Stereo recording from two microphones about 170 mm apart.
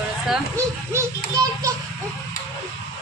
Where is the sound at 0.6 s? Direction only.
20° right (ahead or behind).